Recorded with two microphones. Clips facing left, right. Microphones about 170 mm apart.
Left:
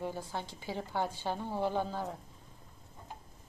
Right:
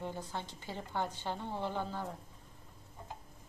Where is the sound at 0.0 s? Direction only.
10° left (ahead or behind).